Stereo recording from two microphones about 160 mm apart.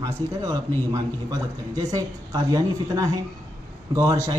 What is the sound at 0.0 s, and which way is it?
A man's voice, 25° right (ahead or behind).